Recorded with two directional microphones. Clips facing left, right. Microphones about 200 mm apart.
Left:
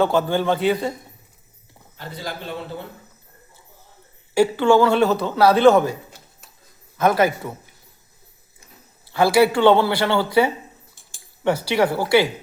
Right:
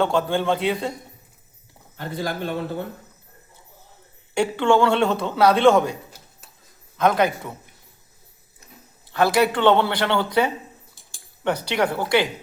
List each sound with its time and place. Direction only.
0.0 s speech: 5° left (ahead or behind)
2.0 s a man's voice: 50° right (ahead or behind)
4.4 s speech: 5° left (ahead or behind)
9.1 s speech: 10° left (ahead or behind)